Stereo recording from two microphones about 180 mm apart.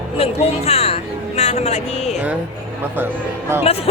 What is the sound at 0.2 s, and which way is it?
Speech, 35° left (ahead or behind).